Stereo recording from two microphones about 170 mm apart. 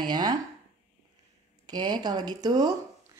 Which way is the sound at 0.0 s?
25° right (ahead or behind).